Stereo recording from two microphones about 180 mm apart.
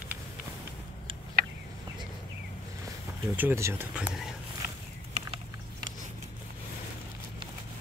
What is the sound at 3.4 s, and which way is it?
Speech, 15° right (ahead or behind).